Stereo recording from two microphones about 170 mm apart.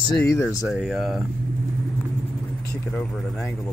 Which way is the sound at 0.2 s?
15° left (ahead or behind).